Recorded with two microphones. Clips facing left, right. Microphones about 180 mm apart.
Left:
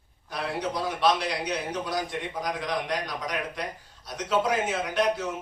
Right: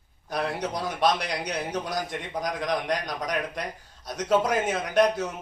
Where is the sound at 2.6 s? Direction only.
45° right (ahead or behind).